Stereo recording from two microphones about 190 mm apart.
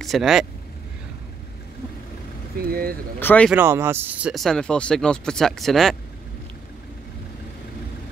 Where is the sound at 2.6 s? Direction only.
50° right (ahead or behind).